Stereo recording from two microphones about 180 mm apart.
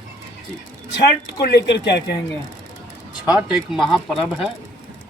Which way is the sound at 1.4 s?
70° left (ahead or behind).